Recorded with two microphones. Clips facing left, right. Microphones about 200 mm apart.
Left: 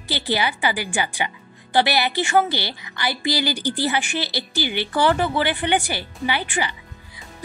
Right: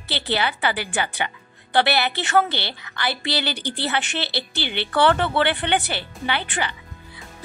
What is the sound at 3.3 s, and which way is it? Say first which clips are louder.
Speech: left 5 dB; 65° right (ahead or behind).